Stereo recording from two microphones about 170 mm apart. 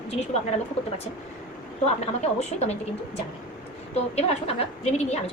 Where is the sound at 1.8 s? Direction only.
40° left (ahead or behind).